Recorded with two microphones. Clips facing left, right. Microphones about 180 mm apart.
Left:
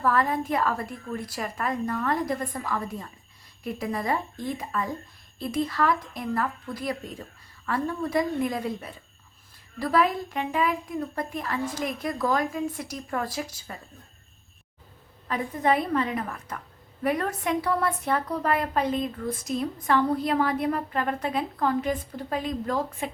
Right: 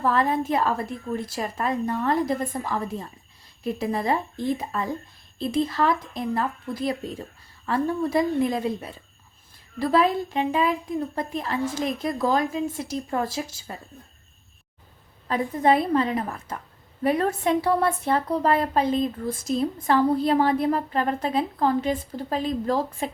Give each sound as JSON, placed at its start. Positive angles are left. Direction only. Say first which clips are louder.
{"t": 0.0, "sound": "a woman's voice", "louder": "right 2 dB", "side_deg": -25}
{"t": 15.3, "sound": "a woman's voice", "louder": "right 4 dB", "side_deg": -30}